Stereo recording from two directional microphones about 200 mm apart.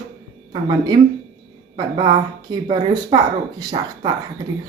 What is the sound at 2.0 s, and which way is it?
Speech, 25° right (ahead or behind).